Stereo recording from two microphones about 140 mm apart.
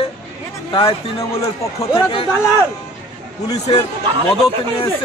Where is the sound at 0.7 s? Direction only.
35° left (ahead or behind).